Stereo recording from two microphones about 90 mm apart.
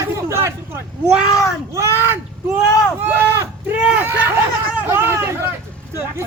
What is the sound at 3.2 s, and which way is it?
Speech, 25° right (ahead or behind).